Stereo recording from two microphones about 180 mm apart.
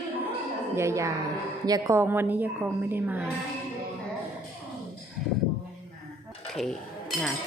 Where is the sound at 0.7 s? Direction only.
15° right (ahead or behind).